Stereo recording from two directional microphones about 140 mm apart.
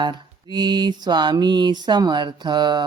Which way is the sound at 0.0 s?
30° right (ahead or behind).